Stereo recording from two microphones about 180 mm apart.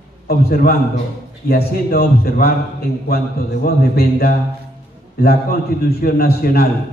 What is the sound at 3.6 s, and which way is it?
A man's voice, 55° left (ahead or behind).